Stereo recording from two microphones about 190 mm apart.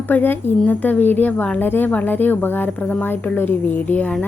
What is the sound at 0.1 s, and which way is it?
A woman's voice, 10° left (ahead or behind).